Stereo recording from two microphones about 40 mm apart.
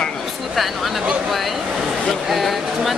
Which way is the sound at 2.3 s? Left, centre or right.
Centre.